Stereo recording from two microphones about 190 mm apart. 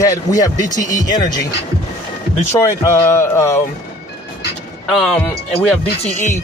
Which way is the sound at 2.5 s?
15° left (ahead or behind).